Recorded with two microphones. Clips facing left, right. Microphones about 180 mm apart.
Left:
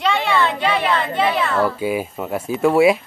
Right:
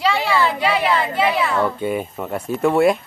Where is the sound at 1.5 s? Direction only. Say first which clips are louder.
Left 1 dB; 5° left (ahead or behind).